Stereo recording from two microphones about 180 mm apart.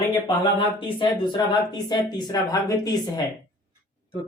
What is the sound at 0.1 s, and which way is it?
Speech, 25° left (ahead or behind).